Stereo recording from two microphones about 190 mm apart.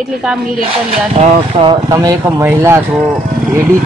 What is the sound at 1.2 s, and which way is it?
Speech, 30° right (ahead or behind).